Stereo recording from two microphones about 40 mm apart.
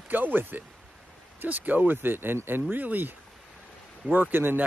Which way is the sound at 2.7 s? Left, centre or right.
Right.